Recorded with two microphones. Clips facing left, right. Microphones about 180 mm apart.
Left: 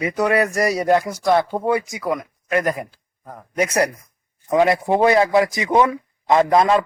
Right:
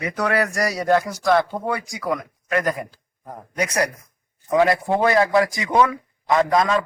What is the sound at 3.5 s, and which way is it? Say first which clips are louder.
Speech: left 4 dB; 30° left (ahead or behind).